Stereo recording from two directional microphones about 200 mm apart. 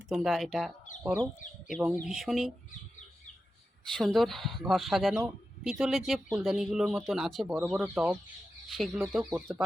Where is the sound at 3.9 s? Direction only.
Centre (ahead or behind).